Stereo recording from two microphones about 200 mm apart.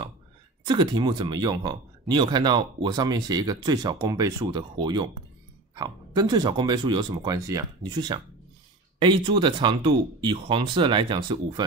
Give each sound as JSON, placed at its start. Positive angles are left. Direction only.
{"t": 0.7, "sound": "speech", "side_deg": -20}